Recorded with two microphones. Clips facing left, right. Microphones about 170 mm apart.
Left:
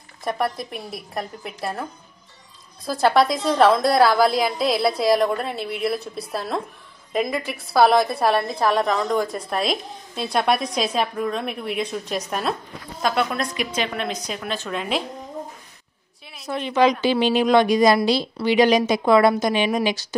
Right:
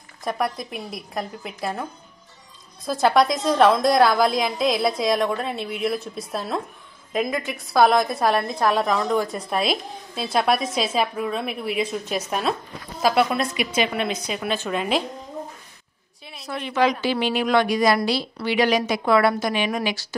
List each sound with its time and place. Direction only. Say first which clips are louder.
0.2 s a woman's voice: left 1 dB; centre (ahead or behind)
16.4 s a woman's voice: left 3 dB; 20° left (ahead or behind)